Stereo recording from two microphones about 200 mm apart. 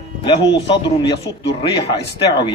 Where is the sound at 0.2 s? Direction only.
25° left (ahead or behind).